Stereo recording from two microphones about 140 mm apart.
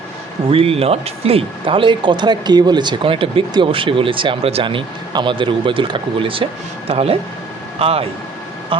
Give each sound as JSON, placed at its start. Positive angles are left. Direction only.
{"t": 0.5, "sound": "speech", "side_deg": -45}